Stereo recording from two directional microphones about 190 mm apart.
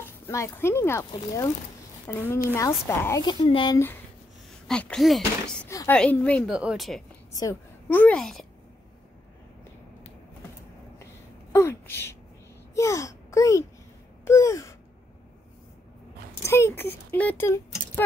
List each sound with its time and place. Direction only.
0.0 s a woman's voice: 15° left (ahead or behind)
4.6 s speech: 5° left (ahead or behind)
5.7 s speech: 15° left (ahead or behind)
6.5 s speech: 5° right (ahead or behind)
7.3 s a woman's voice: 15° left (ahead or behind)
11.5 s a sound: 15° left (ahead or behind)
16.4 s speech: 10° left (ahead or behind)